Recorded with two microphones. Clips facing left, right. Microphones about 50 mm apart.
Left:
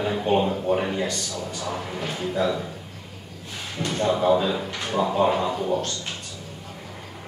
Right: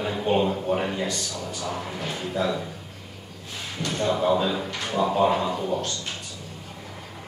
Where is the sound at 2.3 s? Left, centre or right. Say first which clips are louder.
Left 2 dB; centre.